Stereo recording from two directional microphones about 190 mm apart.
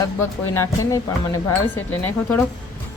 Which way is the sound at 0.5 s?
15° left (ahead or behind).